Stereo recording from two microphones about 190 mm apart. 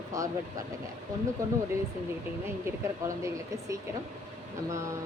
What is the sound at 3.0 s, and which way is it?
Speech, 15° right (ahead or behind).